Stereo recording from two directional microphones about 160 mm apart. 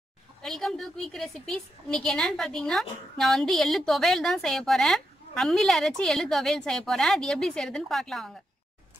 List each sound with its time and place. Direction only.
0.4 s a woman's voice: centre (ahead or behind)